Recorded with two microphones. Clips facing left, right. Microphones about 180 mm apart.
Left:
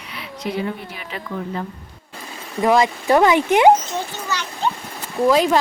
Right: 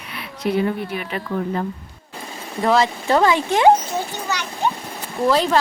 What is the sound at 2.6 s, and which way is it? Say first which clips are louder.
Speech: left 1 dB; 15° left (ahead or behind).